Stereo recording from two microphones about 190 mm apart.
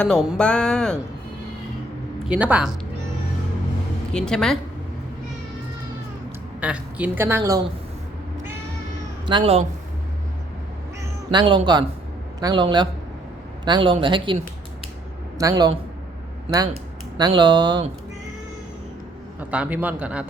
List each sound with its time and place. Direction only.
0.0 s speech: centre (ahead or behind)
2.2 s speech: 5° right (ahead or behind)
4.1 s speech: 5° left (ahead or behind)
6.6 s a woman's voice: 5° right (ahead or behind)
9.2 s speech: 30° right (ahead or behind)
11.3 s speech: 25° right (ahead or behind)
15.4 s speech: 20° right (ahead or behind)
17.2 s speech: 20° right (ahead or behind)
19.4 s a woman's voice: 5° right (ahead or behind)